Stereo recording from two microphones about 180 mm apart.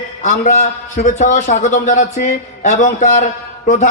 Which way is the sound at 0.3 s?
45° left (ahead or behind).